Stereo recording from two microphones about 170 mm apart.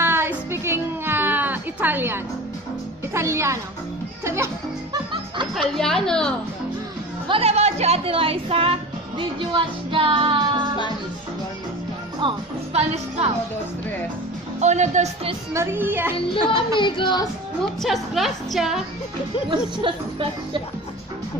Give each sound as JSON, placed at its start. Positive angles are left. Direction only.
{"t": 0.0, "sound": "music", "side_deg": -15}
{"t": 3.1, "sound": "a child's voice", "side_deg": -15}
{"t": 5.5, "sound": "a woman's voice", "side_deg": 0}
{"t": 7.2, "sound": "speech", "side_deg": -35}
{"t": 9.4, "sound": "music", "side_deg": -30}
{"t": 12.2, "sound": "speech", "side_deg": -35}
{"t": 14.6, "sound": "speech", "side_deg": -45}
{"t": 15.5, "sound": "a woman's voice", "side_deg": -15}
{"t": 16.8, "sound": "speech", "side_deg": 30}
{"t": 17.8, "sound": "a woman's voice", "side_deg": 0}
{"t": 19.5, "sound": "music", "side_deg": -30}